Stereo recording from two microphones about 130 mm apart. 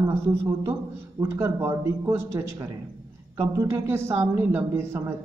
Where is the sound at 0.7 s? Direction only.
20° right (ahead or behind).